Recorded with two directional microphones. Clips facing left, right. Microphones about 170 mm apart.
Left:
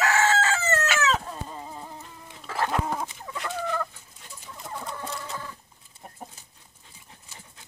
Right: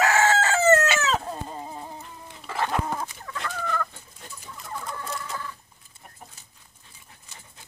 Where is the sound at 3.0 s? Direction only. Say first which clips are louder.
Even; 15° left (ahead or behind).